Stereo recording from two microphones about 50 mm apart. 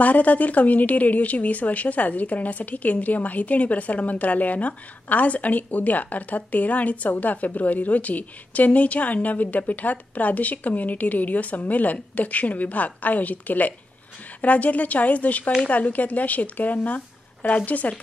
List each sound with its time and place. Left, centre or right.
0.0 s a woman's voice: left